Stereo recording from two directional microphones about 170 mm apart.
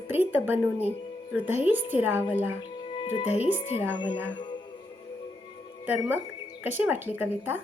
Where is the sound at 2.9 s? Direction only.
30° left (ahead or behind).